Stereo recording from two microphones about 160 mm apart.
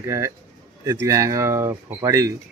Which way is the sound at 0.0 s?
15° right (ahead or behind).